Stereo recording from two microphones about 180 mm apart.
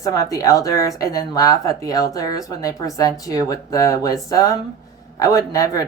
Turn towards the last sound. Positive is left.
turn(degrees=20)  # may be behind; listen again after turning